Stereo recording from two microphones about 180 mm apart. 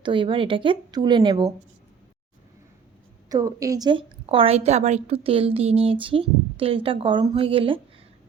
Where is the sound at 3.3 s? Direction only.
20° right (ahead or behind).